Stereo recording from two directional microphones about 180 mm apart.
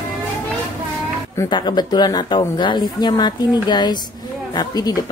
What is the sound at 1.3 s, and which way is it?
Speech, 25° left (ahead or behind).